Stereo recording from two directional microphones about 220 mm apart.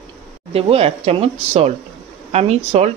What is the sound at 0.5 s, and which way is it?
Speech, 25° right (ahead or behind).